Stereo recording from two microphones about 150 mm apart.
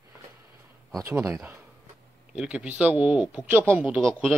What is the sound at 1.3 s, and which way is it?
A man's voice, 15° right (ahead or behind).